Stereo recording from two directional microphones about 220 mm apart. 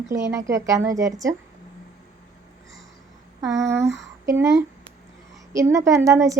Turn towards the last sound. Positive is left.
turn(degrees=-15)  # may be behind; listen again after turning